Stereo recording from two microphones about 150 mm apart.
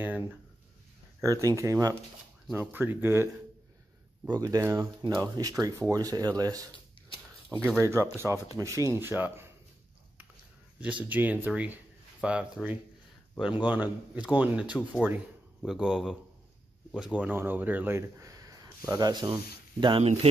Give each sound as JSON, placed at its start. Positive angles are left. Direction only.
{"t": 0.0, "sound": "speech", "side_deg": -15}
{"t": 4.3, "sound": "speech", "side_deg": -25}
{"t": 7.8, "sound": "speech", "side_deg": -20}
{"t": 10.8, "sound": "speech", "side_deg": -10}